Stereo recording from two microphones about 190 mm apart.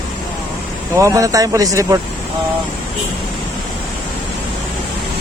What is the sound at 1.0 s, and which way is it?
Speech, 15° right (ahead or behind).